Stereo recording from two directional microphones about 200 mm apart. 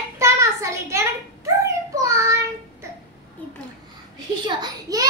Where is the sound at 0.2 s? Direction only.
15° right (ahead or behind).